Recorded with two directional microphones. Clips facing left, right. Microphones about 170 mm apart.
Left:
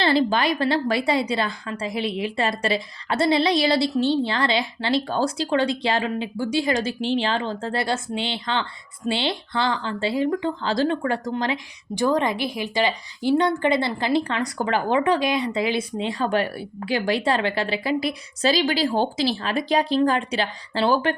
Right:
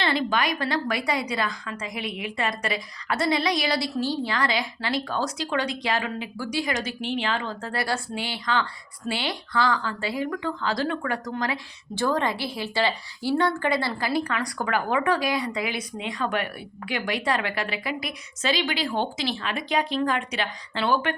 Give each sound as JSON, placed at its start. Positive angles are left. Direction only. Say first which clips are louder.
{"t": 0.0, "sound": "speech", "louder": "left 5 dB", "side_deg": 30}